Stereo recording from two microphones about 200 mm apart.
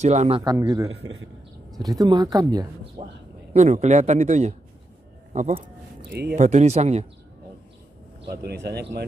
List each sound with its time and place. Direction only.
0.0 s a man's voice: 35° right (ahead or behind)
0.4 s a man's voice: 15° right (ahead or behind)
0.8 s a man's voice: 80° right
1.7 s speech: 20° right (ahead or behind)
3.5 s a man's voice: 35° right (ahead or behind)
6.0 s speech: 55° right (ahead or behind)
6.3 s a man's voice: 35° right (ahead or behind)
8.5 s speech: 55° right (ahead or behind)